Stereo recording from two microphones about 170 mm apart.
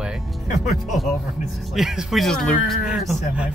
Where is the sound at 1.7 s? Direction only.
Centre (ahead or behind).